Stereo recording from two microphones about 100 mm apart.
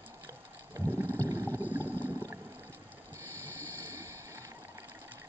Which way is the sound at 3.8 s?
25° right (ahead or behind).